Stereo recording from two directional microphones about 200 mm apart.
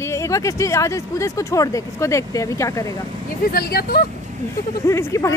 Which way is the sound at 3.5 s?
50° left (ahead or behind).